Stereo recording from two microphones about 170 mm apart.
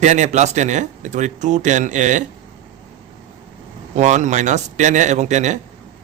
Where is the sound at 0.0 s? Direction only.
45° right (ahead or behind).